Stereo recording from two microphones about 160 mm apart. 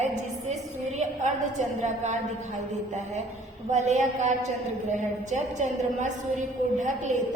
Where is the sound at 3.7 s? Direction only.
50° right (ahead or behind).